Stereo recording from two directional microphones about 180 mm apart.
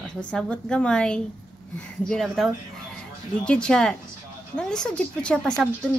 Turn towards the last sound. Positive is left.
turn(degrees=5)  # may be behind; listen again after turning